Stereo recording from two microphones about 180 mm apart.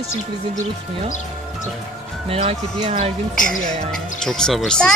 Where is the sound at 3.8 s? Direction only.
5° left (ahead or behind).